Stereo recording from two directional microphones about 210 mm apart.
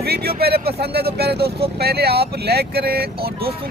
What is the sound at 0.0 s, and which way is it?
Speech, 50° right (ahead or behind).